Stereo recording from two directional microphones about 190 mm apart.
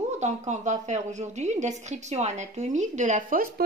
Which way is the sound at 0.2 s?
40° right (ahead or behind).